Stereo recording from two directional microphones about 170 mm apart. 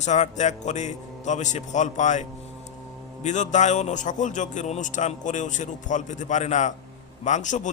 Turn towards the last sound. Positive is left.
turn(degrees=45)  # may be behind; listen again after turning